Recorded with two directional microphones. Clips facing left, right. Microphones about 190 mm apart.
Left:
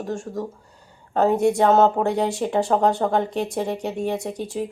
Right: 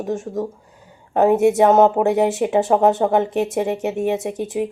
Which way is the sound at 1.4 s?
20° right (ahead or behind).